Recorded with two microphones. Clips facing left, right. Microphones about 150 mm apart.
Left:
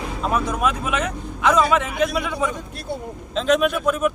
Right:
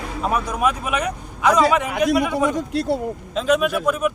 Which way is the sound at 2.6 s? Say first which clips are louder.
Right 9 dB; 85° right.